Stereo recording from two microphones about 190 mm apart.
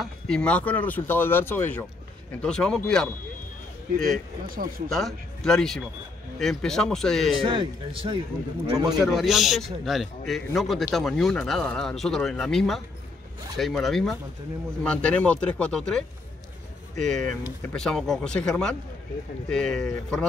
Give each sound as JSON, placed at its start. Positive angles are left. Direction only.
{"t": 0.0, "sound": "a man's voice", "side_deg": 5}
{"t": 4.5, "sound": "speech", "side_deg": -50}
{"t": 4.8, "sound": "a man's voice", "side_deg": 0}
{"t": 7.4, "sound": "a man's voice", "side_deg": -25}
{"t": 9.0, "sound": "a man's voice", "side_deg": 0}